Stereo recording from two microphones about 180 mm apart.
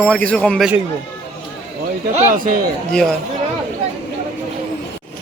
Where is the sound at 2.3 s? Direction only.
50° right (ahead or behind).